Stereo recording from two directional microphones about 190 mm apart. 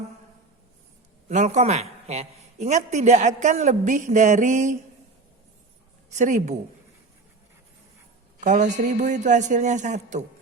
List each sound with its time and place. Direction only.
1.3 s a man's voice: 40° right (ahead or behind)
6.1 s a man's voice: 40° right (ahead or behind)
8.4 s a man's voice: 40° right (ahead or behind)